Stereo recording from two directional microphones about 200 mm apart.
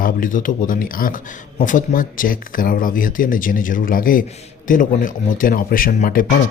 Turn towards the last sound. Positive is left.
turn(degrees=45)  # may be behind; listen again after turning